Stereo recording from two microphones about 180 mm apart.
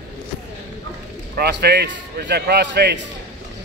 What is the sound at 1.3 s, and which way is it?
A man's voice, 65° right (ahead or behind).